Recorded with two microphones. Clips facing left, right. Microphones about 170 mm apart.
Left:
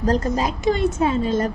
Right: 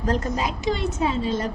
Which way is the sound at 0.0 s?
35° left (ahead or behind).